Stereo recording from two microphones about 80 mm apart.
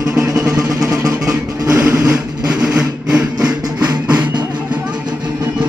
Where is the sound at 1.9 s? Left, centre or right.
Right.